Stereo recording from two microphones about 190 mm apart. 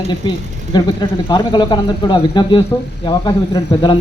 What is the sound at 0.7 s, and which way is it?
Speech, 20° left (ahead or behind).